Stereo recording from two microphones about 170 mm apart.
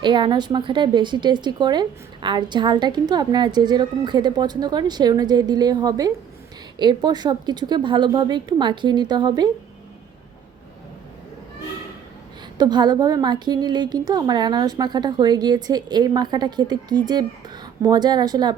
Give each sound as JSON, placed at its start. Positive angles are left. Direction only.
{"t": 0.0, "sound": "a woman's voice", "side_deg": -30}
{"t": 12.5, "sound": "a woman's voice", "side_deg": -25}